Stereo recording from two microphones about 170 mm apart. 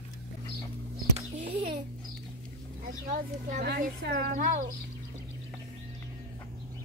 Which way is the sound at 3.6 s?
85° right.